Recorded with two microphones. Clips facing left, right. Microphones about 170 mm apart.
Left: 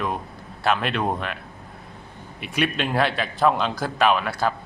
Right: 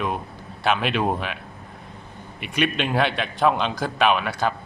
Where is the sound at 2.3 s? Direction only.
Centre (ahead or behind).